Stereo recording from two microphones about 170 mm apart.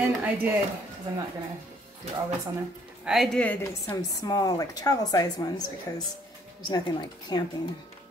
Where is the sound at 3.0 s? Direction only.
Centre (ahead or behind); by 7.4 s 25° left (ahead or behind).